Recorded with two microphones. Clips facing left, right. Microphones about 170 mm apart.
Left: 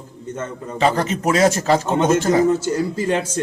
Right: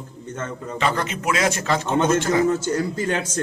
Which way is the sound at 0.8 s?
35° left (ahead or behind).